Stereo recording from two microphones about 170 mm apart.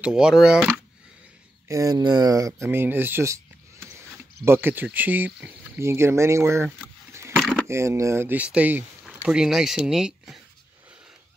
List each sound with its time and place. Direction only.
0.0 s speech: 5° right (ahead or behind)
1.7 s speech: 20° right (ahead or behind)
4.5 s speech: 10° right (ahead or behind)
7.1 s a sound: 15° right (ahead or behind)
7.3 s a sound: centre (ahead or behind)
7.6 s speech: 15° right (ahead or behind)